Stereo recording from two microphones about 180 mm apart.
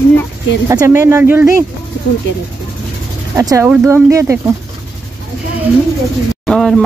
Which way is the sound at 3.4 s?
15° right (ahead or behind).